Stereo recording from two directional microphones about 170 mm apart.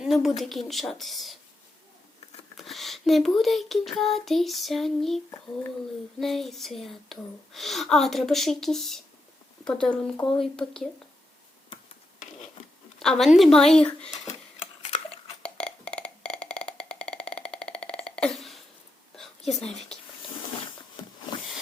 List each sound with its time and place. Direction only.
0.0 s speech: centre (ahead or behind)
2.6 s speech: centre (ahead or behind)
13.0 s speech: centre (ahead or behind)
14.8 s a sound: 35° left (ahead or behind)
15.4 s wood block: 5° left (ahead or behind)
19.5 s speech: 5° left (ahead or behind)